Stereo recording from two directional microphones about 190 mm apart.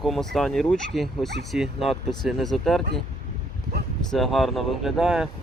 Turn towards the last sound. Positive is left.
turn(degrees=-5)  # may be behind; listen again after turning